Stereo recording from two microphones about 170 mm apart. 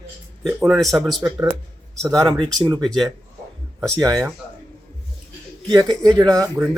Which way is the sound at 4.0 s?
20° right (ahead or behind).